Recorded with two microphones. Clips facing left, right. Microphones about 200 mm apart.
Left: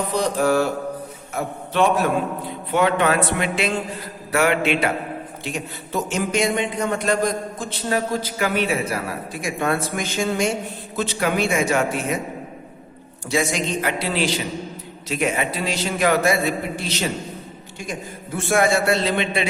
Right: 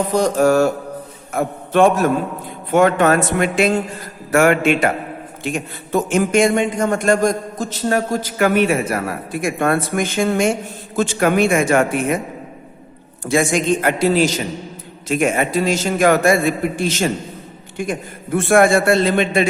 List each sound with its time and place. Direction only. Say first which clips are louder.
0.1 s a man's voice: right 5 dB; 45° right (ahead or behind)
13.2 s a man's voice: right 6 dB; 50° right (ahead or behind)